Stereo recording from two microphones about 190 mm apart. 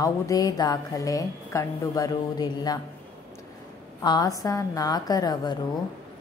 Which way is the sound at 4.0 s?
20° left (ahead or behind).